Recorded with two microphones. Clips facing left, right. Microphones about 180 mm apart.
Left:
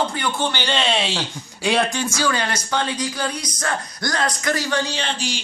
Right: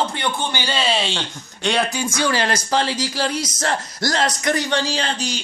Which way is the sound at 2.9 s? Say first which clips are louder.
Right 2 dB; 90° right.